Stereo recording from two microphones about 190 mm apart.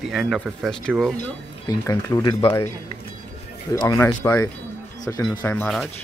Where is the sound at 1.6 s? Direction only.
15° left (ahead or behind).